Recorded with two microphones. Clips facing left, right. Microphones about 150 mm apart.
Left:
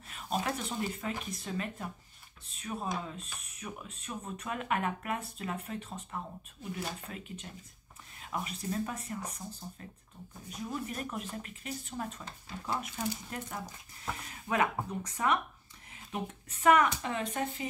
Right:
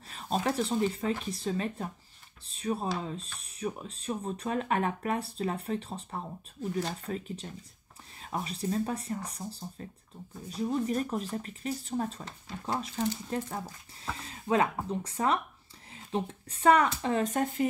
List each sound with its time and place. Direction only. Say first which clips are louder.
0.1 s speech: right 4 dB; 30° right (ahead or behind)